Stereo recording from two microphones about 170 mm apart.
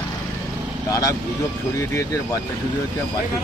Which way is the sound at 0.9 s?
20° left (ahead or behind).